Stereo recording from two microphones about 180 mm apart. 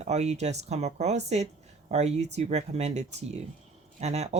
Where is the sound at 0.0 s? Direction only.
40° right (ahead or behind).